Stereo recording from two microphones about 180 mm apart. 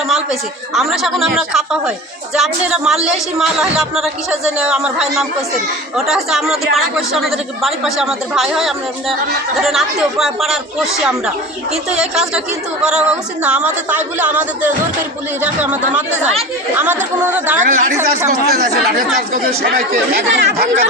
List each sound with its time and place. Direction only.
0.1 s a woman's voice: centre (ahead or behind)
17.6 s speech: 45° right (ahead or behind)
19.5 s speech: 55° right (ahead or behind)